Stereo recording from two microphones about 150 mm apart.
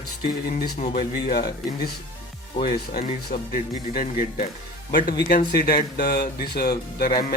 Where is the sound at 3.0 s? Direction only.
60° left (ahead or behind).